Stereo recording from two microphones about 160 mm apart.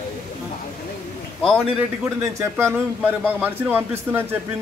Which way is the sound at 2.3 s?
15° right (ahead or behind).